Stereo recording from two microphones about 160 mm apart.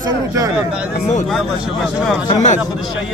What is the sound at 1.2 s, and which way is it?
Speech, centre (ahead or behind).